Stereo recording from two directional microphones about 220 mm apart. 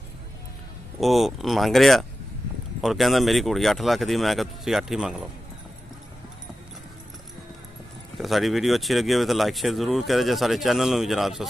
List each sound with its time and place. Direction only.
1.0 s speech: centre (ahead or behind)
8.2 s speech: centre (ahead or behind)